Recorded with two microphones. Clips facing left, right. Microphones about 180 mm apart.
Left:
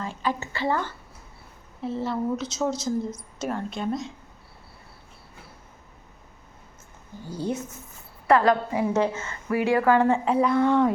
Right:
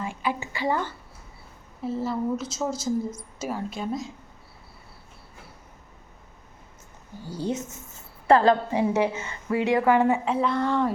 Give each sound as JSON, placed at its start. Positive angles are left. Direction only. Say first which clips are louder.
{"t": 0.0, "sound": "a sound", "louder": "even", "side_deg": -10}
{"t": 1.8, "sound": "a woman's voice", "louder": "even", "side_deg": 0}
{"t": 7.3, "sound": "speech", "louder": "even", "side_deg": -15}
{"t": 8.3, "sound": "a woman's voice", "louder": "right 1 dB", "side_deg": -30}
{"t": 10.2, "sound": "a woman's voice", "louder": "left 4 dB", "side_deg": 0}